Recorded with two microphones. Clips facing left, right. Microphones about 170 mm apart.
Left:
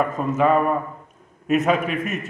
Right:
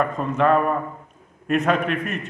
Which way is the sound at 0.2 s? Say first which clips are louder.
Left 2 dB; 5° left (ahead or behind).